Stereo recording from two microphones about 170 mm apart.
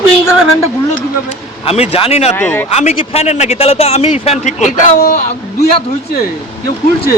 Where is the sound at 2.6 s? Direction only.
40° left (ahead or behind).